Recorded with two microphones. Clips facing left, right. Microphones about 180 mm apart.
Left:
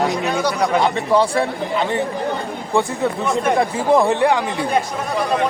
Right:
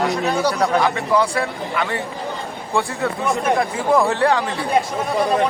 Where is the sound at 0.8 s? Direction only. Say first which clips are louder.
Left 2 dB; 25° left (ahead or behind).